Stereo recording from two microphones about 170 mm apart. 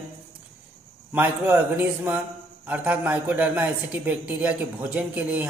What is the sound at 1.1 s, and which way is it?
A man's voice, 10° right (ahead or behind).